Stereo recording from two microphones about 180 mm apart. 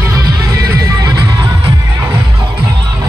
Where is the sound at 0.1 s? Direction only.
20° right (ahead or behind).